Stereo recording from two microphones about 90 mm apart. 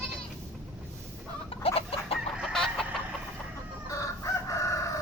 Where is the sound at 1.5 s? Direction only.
90° left.